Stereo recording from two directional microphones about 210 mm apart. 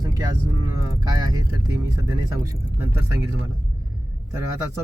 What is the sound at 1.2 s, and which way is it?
Speech, 20° right (ahead or behind).